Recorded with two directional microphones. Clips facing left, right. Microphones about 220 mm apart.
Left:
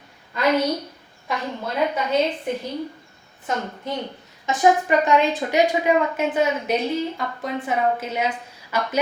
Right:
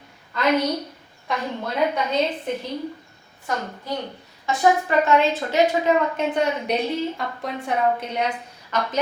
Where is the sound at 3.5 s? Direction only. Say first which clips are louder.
Left 1 dB; 20° left (ahead or behind).